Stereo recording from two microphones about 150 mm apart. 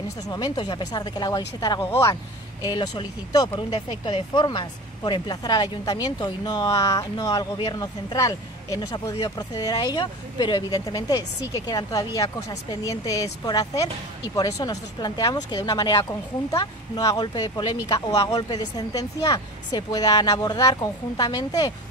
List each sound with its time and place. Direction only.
0.3 s speech: 25° left (ahead or behind)
1.8 s speech: 15° left (ahead or behind)
2.6 s speech: 25° left (ahead or behind)